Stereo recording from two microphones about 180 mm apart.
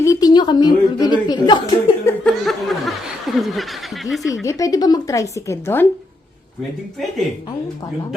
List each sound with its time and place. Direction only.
0.0 s a woman's voice: 20° left (ahead or behind)
2.0 s snicker: 5° left (ahead or behind)
4.4 s speech: 20° left (ahead or behind)